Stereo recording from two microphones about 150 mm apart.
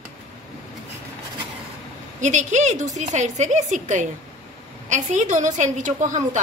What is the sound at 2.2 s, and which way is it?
A woman's voice, 55° right (ahead or behind).